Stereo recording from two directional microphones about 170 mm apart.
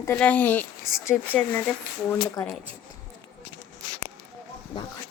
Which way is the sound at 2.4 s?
20° left (ahead or behind).